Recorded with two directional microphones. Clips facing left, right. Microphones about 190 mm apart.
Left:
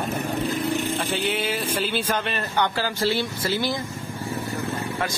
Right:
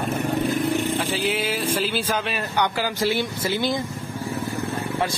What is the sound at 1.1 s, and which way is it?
Speech, 5° right (ahead or behind).